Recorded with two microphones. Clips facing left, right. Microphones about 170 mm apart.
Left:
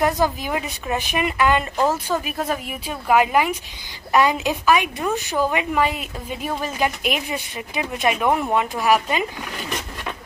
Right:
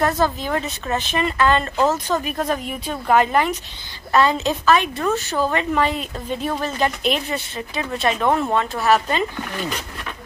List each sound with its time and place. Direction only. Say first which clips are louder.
0.0 s a woman's voice: even; 10° left (ahead or behind)